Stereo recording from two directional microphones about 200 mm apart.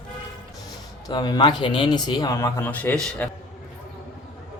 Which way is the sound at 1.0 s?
20° left (ahead or behind).